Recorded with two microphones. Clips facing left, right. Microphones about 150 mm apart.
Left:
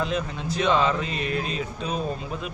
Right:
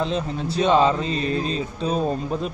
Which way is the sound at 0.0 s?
30° right (ahead or behind).